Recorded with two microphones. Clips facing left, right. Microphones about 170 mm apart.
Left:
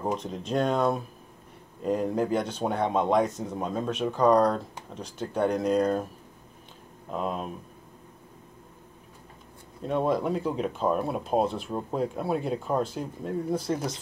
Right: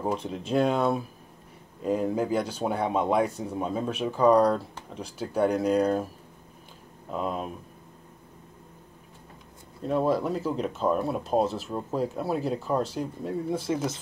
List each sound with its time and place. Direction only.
0.3 s speech: 5° right (ahead or behind)
3.3 s speech: 35° right (ahead or behind)
3.5 s speech: 5° right (ahead or behind)
7.1 s speech: centre (ahead or behind)
9.8 s speech: centre (ahead or behind)